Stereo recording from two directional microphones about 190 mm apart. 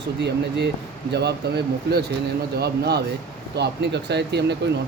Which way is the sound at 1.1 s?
60° right (ahead or behind).